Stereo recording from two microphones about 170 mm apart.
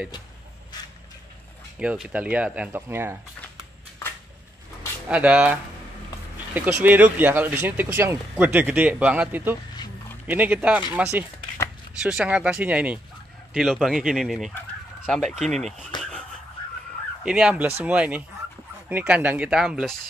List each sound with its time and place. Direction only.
0.7 s a sound: 25° left (ahead or behind)
1.8 s speech: 5° right (ahead or behind)
5.0 s speech: 10° right (ahead or behind)
16.0 s whispering: 5° left (ahead or behind)
17.2 s speech: 5° right (ahead or behind)